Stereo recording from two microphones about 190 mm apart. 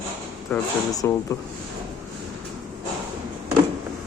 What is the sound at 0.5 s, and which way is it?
Speech, 10° left (ahead or behind).